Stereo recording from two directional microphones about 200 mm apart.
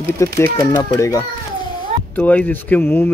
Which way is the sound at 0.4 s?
15° left (ahead or behind).